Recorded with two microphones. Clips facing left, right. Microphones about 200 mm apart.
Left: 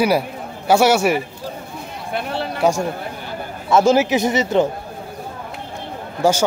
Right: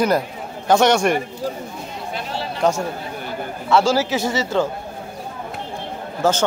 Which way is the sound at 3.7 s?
20° left (ahead or behind).